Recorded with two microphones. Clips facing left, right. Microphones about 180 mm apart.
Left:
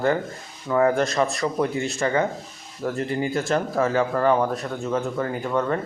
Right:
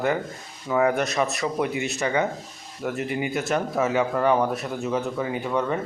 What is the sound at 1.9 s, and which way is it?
Speech, 15° right (ahead or behind).